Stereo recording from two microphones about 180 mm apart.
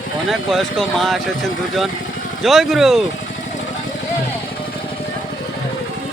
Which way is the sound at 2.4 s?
Centre (ahead or behind).